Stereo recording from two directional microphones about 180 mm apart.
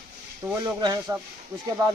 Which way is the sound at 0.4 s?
10° right (ahead or behind).